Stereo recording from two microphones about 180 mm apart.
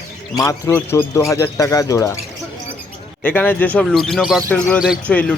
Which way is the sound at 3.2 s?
10° left (ahead or behind).